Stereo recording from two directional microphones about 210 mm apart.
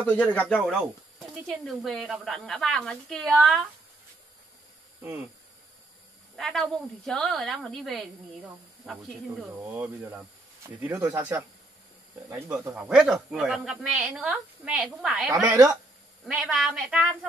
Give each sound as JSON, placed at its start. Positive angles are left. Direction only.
{"t": 0.0, "sound": "speech", "side_deg": 10}
{"t": 1.8, "sound": "a man's voice", "side_deg": 0}
{"t": 6.3, "sound": "a man's voice", "side_deg": 0}
{"t": 16.3, "sound": "a man's voice", "side_deg": 0}